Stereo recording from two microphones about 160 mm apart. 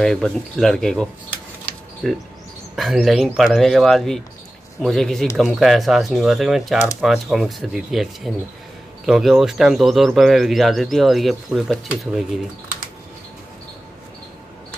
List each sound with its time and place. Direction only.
0.0 s speech: centre (ahead or behind)